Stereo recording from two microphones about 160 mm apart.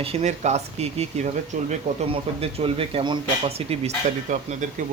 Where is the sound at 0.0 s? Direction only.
40° right (ahead or behind).